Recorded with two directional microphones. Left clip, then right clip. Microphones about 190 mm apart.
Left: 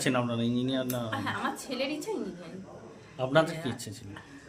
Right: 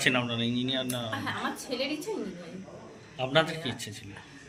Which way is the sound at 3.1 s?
35° left (ahead or behind).